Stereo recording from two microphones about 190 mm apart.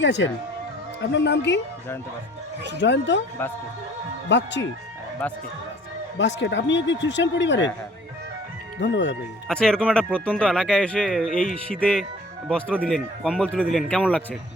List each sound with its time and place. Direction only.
0.0 s a man's voice: 70° left (ahead or behind)
2.7 s a man's voice: 65° left (ahead or behind)
4.3 s a man's voice: 70° left (ahead or behind)
6.1 s a man's voice: 70° left (ahead or behind)
8.8 s a man's voice: 70° left (ahead or behind)
9.5 s speech: 5° left (ahead or behind)